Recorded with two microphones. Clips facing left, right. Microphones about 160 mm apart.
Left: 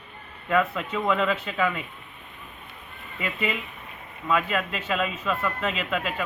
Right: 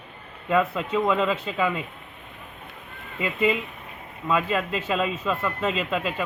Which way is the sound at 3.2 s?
25° right (ahead or behind).